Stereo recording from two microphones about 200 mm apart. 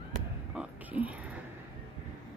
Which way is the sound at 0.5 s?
5° right (ahead or behind).